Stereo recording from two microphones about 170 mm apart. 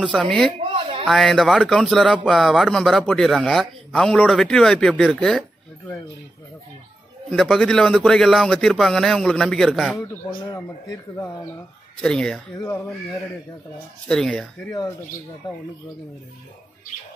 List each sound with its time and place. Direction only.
0.0 s speech: 5° left (ahead or behind)
0.6 s a sound: 35° right (ahead or behind)
1.0 s speech: centre (ahead or behind)
7.2 s speech: centre (ahead or behind)
9.9 s speech: 20° left (ahead or behind)
12.0 s speech: 5° left (ahead or behind)
14.0 s speech: 5° left (ahead or behind)